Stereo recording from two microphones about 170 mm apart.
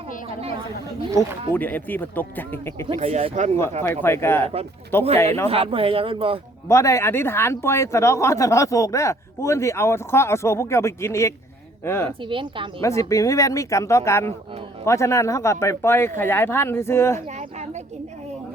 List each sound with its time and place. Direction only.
1.5 s speech: 10° left (ahead or behind)
2.8 s speech: 35° right (ahead or behind)
4.0 s speech: 15° left (ahead or behind)
5.0 s speech: 35° right (ahead or behind)
6.7 s speech: 15° left (ahead or behind)
12.2 s speech: 30° right (ahead or behind)
12.8 s speech: 20° left (ahead or behind)
17.2 s speech: 40° right (ahead or behind)